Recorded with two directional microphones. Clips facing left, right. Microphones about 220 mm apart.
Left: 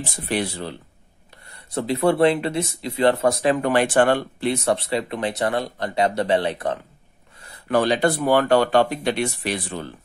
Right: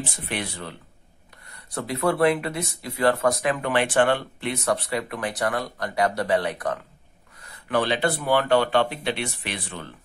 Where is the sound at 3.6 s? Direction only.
40° left (ahead or behind).